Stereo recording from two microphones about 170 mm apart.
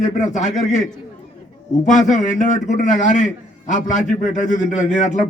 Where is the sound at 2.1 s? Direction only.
50° left (ahead or behind).